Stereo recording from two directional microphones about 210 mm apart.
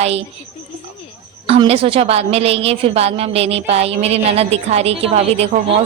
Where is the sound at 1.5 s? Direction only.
30° right (ahead or behind).